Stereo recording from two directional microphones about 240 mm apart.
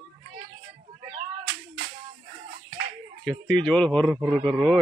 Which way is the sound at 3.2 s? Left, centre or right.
Centre.